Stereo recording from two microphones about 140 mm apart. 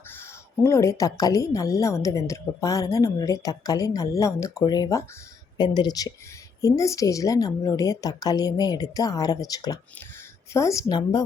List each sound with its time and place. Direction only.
0.6 s a woman's voice: 20° left (ahead or behind)